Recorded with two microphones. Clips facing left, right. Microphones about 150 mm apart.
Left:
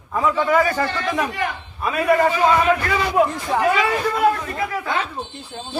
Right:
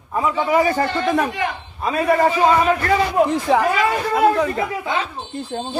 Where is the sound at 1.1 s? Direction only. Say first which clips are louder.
Right 4 dB; 50° right (ahead or behind).